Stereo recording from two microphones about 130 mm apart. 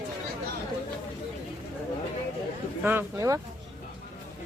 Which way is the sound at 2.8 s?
15° right (ahead or behind).